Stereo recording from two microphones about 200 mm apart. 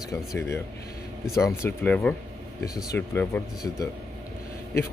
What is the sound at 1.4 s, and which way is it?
Speech, 10° left (ahead or behind).